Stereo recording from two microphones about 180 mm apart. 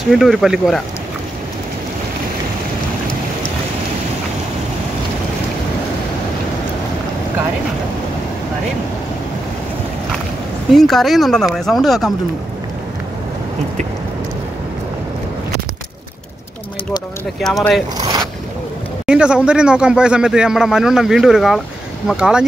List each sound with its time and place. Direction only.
0.1 s speech: centre (ahead or behind)
10.7 s speech: centre (ahead or behind)
17.4 s speech: centre (ahead or behind)
17.9 s boat: 20° right (ahead or behind)
19.0 s speech: 5° right (ahead or behind)